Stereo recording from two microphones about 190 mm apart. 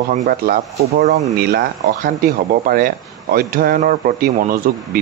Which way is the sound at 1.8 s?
45° right (ahead or behind).